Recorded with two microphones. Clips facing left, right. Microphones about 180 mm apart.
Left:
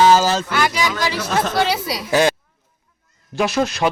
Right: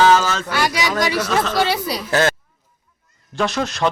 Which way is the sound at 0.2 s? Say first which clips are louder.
Left 4 dB; 35° left (ahead or behind).